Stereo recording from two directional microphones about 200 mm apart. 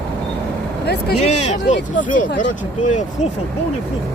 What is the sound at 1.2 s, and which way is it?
Speech, 35° left (ahead or behind).